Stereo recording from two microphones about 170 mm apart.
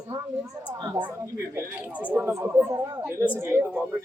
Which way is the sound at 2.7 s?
25° right (ahead or behind).